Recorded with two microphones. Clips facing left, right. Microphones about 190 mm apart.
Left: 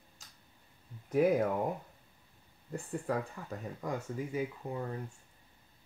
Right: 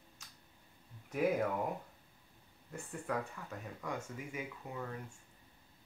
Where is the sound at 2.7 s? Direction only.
35° left (ahead or behind).